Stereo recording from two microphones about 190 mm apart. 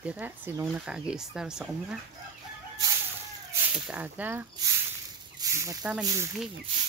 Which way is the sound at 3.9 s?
10° right (ahead or behind).